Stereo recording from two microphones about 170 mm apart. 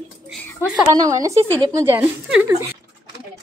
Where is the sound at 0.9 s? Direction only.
20° right (ahead or behind).